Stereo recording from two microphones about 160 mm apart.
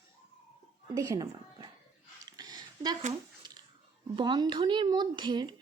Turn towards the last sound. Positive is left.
turn(degrees=-30)  # may be behind; listen again after turning